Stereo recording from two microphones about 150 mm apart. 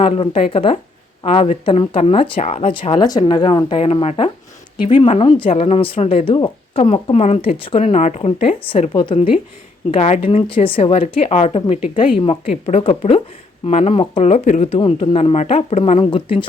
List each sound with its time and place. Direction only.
0.0 s speech: 35° left (ahead or behind)
3.0 s speech: 30° left (ahead or behind)
7.9 s speech: 50° left (ahead or behind); by 9.4 s 35° left (ahead or behind)
9.9 s speech: 45° left (ahead or behind)
10.5 s speech: 35° left (ahead or behind)